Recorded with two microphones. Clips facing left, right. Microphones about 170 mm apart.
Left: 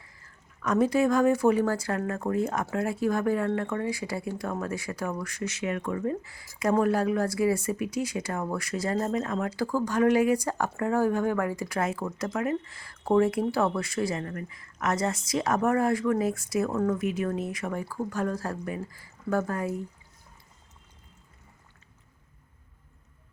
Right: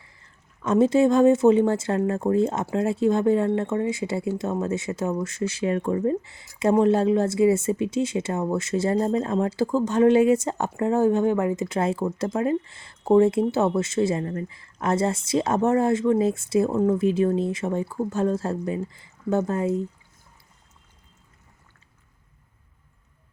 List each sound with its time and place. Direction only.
0.0 s speech: 25° right (ahead or behind)